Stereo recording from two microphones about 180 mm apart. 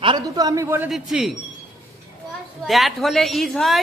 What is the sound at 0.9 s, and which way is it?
Speech, centre (ahead or behind).